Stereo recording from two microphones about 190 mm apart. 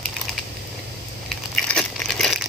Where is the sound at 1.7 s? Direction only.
5° left (ahead or behind).